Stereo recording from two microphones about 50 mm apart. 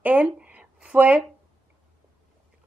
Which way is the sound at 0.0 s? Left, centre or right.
Right.